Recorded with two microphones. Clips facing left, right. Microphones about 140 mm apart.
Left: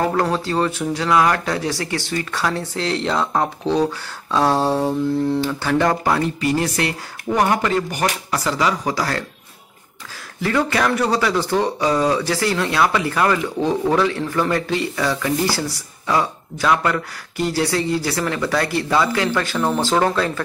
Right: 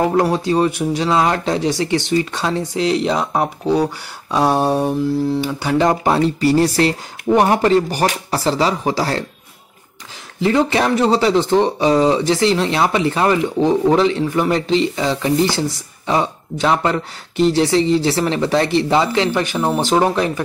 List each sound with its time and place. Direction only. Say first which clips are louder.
0.0 s speech: right 4 dB; 15° right (ahead or behind)
5.0 s speech: right 1 dB; 5° right (ahead or behind)
5.4 s speech: right 2 dB; 15° right (ahead or behind)
10.4 s speech: right 4 dB; 20° right (ahead or behind)